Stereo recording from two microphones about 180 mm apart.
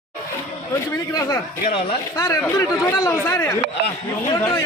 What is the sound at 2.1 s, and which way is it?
Speech, 20° left (ahead or behind).